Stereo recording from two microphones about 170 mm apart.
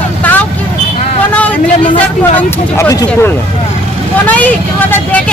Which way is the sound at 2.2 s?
15° left (ahead or behind).